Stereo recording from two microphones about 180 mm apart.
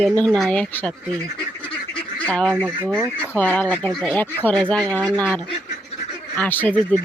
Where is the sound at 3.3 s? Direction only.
10° left (ahead or behind).